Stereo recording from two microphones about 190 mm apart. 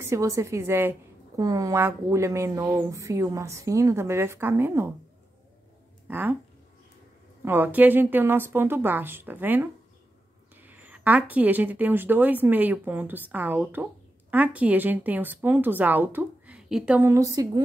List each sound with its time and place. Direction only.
0.0 s a woman's voice: 15° right (ahead or behind)
6.0 s speech: 10° right (ahead or behind)
7.4 s a woman's voice: 10° right (ahead or behind)